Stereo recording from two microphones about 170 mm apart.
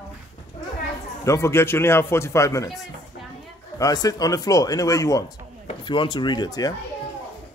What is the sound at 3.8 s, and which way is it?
Speech, 20° left (ahead or behind).